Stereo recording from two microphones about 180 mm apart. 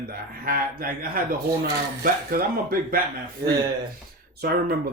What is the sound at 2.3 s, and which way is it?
Speech, 55° right (ahead or behind).